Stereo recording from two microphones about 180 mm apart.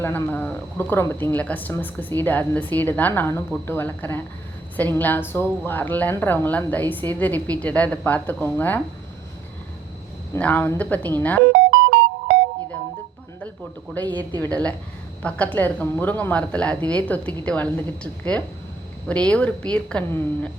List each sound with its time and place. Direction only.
0.0 s a woman's voice: 10° left (ahead or behind)
10.3 s a woman's voice: 10° left (ahead or behind)
11.5 s music: 90° right
14.0 s speech: 25° right (ahead or behind)
14.5 s a woman's voice: 10° left (ahead or behind)